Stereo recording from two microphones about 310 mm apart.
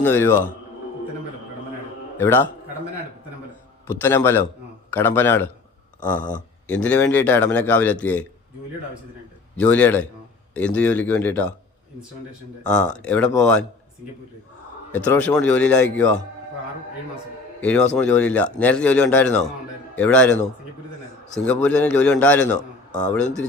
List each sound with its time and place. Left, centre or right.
0.0 s a man's voice: centre
2.1 s a man's voice: centre
4.0 s a man's voice: centre
9.6 s speech: centre
12.6 s speech: centre
14.9 s speech: centre
17.6 s a man's voice: centre
21.4 s speech: centre
22.9 s speech: left